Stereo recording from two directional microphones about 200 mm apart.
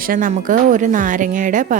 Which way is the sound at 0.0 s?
45° right (ahead or behind).